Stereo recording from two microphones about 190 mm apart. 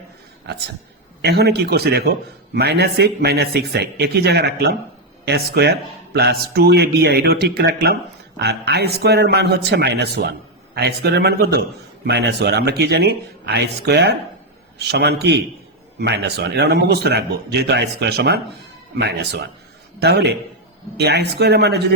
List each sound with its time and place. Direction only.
1.2 s a man's voice: 60° right (ahead or behind)